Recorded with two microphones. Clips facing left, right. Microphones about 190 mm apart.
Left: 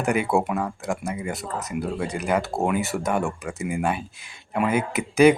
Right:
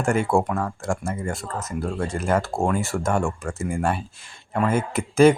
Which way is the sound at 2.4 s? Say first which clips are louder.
Even; 5° left (ahead or behind).